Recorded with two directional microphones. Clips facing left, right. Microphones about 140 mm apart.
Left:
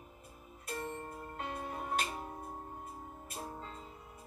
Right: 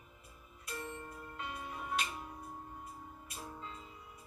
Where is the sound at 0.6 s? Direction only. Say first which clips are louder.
Left 4 dB; 50° left (ahead or behind).